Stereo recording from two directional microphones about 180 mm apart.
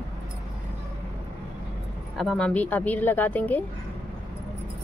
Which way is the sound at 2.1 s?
5° left (ahead or behind).